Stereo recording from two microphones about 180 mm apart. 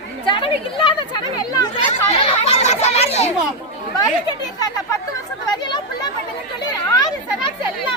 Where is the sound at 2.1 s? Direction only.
35° left (ahead or behind).